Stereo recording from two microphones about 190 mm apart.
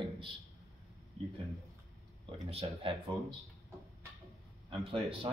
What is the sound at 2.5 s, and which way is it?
Speech, 25° right (ahead or behind).